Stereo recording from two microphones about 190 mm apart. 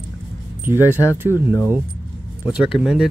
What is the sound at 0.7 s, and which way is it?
Speech, 10° right (ahead or behind).